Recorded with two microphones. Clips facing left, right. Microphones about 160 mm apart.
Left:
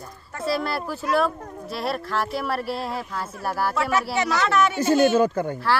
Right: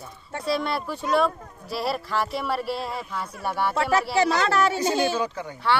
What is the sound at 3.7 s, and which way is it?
Speech, 30° right (ahead or behind).